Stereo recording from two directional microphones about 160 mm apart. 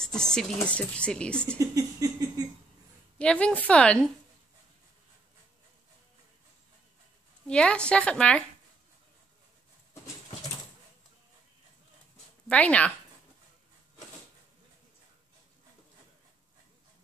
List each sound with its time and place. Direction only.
0.0 s speech: 5° left (ahead or behind)
1.6 s a sound: 20° right (ahead or behind)
3.2 s a woman's voice: 5° left (ahead or behind)
7.4 s a woman's voice: 5° left (ahead or behind)
12.4 s a woman's voice: 10° left (ahead or behind)